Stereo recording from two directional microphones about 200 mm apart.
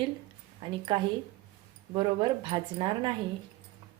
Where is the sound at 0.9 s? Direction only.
25° right (ahead or behind).